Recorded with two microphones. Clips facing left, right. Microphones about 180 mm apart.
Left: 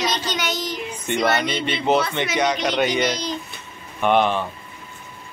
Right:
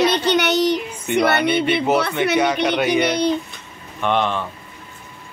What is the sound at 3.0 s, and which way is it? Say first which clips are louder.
Child singing: right 5 dB; 60° right (ahead or behind).